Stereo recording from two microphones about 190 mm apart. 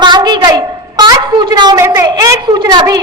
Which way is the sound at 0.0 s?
25° right (ahead or behind).